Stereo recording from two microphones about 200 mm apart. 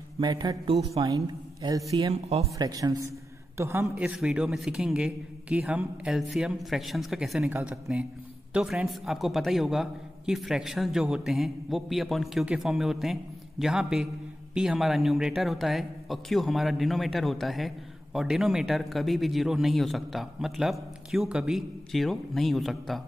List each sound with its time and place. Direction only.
0.2 s a woman's voice: 20° right (ahead or behind); by 23.0 s centre (ahead or behind)